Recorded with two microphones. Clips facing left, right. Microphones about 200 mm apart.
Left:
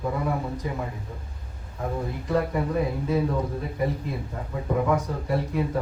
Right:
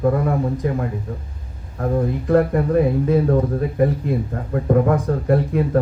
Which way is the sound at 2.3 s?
55° right (ahead or behind).